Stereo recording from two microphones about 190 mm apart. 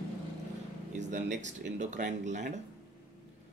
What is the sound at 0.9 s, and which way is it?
Speech, 40° right (ahead or behind).